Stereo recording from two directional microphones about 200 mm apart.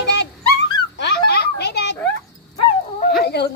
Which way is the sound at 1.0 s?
55° left (ahead or behind).